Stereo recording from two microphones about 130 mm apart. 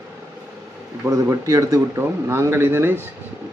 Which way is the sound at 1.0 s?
25° right (ahead or behind).